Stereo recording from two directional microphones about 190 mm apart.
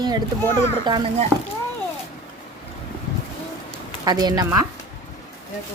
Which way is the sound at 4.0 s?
20° right (ahead or behind).